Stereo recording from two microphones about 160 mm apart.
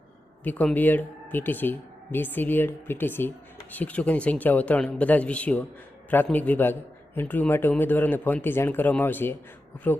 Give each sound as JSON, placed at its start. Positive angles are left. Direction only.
{"t": 0.4, "sound": "speech", "side_deg": 10}